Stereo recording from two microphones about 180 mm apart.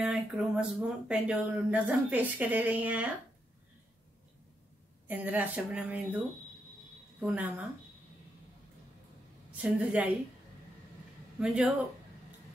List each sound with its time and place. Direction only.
0.0 s speech: 5° right (ahead or behind)
5.0 s speech: 10° right (ahead or behind)
10.0 s a man's voice: 5° right (ahead or behind)
11.3 s a man's voice: 5° right (ahead or behind)